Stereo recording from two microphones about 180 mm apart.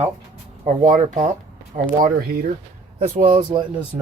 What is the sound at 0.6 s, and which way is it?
Speech, 45° right (ahead or behind).